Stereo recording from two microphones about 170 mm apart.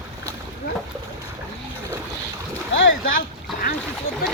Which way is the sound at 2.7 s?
90° left.